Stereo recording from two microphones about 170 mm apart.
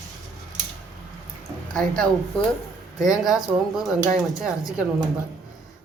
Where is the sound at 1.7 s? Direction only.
5° left (ahead or behind).